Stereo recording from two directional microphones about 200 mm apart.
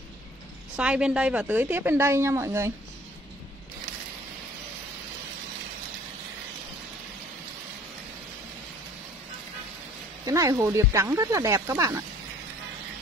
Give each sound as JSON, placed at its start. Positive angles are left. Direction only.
{"t": 0.7, "sound": "a woman's voice", "side_deg": -5}
{"t": 10.2, "sound": "a woman's voice", "side_deg": -15}